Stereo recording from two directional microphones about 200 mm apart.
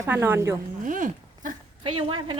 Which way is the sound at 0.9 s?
40° right (ahead or behind).